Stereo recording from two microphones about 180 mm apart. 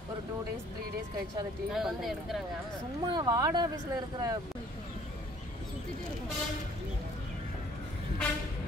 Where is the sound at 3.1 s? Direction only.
20° right (ahead or behind).